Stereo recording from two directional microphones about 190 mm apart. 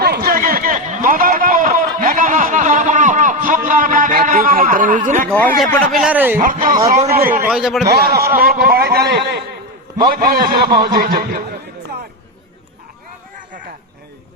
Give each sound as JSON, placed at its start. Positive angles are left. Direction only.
{"t": 0.0, "sound": "a sound", "side_deg": -55}
{"t": 5.3, "sound": "speech", "side_deg": 5}
{"t": 6.4, "sound": "speech", "side_deg": -45}
{"t": 7.4, "sound": "speech", "side_deg": -5}
{"t": 7.9, "sound": "a man's voice", "side_deg": -55}